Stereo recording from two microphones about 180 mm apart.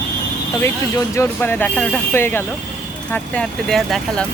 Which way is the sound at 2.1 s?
10° left (ahead or behind).